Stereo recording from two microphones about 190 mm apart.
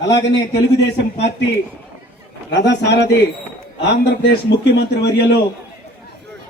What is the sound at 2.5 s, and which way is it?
A man's voice, 65° left (ahead or behind).